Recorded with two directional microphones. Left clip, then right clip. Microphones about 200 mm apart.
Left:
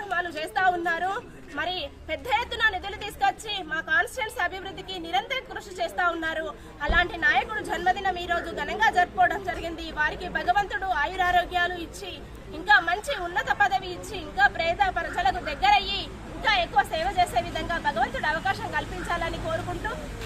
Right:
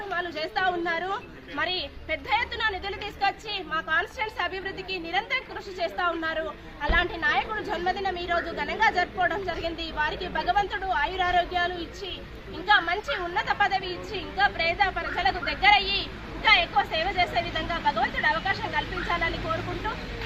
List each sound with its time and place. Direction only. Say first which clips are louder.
0.1 s a woman's voice: left 1 dB; 30° left (ahead or behind)